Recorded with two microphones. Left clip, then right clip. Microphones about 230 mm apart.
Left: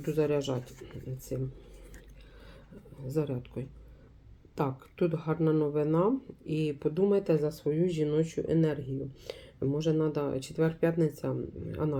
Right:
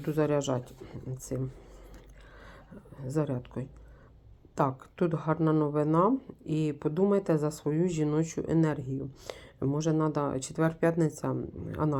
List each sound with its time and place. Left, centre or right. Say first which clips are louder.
0.0 s speech: right 1 dB; right
3.0 s speech: right 1 dB; right